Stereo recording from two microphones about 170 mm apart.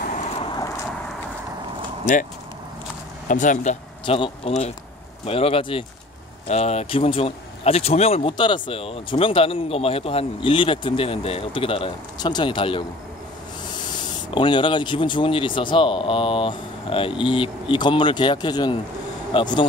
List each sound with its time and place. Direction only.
2.1 s speech: 45° left (ahead or behind)
3.3 s speech: 50° left (ahead or behind)
4.0 s speech: 30° left (ahead or behind)
14.3 s speech: 30° left (ahead or behind)